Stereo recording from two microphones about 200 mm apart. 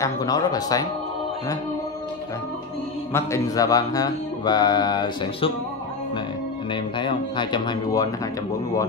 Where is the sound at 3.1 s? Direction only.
15° left (ahead or behind).